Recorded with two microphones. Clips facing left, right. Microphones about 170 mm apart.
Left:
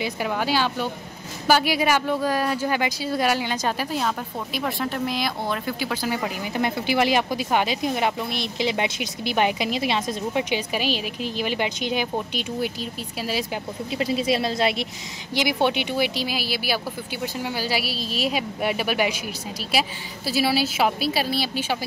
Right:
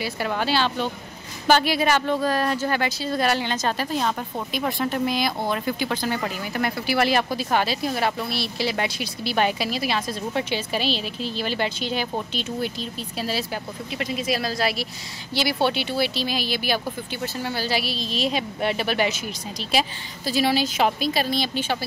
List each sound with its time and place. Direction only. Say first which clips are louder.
0.3 s speech: right 1 dB; 10° left (ahead or behind)
13.9 s a woman's voice: left 3 dB; 30° left (ahead or behind); by 21.7 s 10° left (ahead or behind)